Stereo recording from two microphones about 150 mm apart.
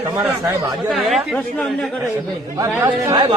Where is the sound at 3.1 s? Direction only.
25° right (ahead or behind).